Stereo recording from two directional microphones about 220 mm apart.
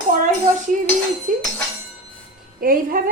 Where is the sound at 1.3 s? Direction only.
35° right (ahead or behind).